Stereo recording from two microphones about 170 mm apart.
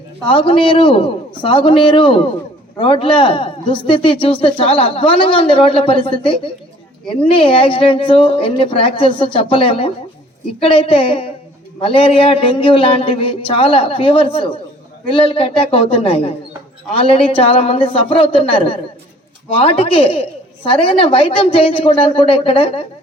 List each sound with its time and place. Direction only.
0.3 s a man's voice: 30° left (ahead or behind)